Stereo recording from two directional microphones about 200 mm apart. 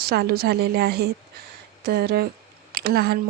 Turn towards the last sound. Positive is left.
turn(degrees=-50)  # may be behind; listen again after turning